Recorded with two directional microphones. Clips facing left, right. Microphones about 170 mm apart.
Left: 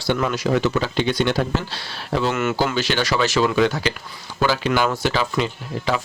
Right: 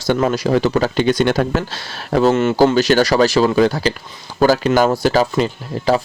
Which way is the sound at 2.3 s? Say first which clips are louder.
Right 8 dB; 35° right (ahead or behind).